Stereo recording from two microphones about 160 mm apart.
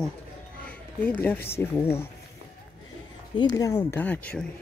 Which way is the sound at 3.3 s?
25° left (ahead or behind).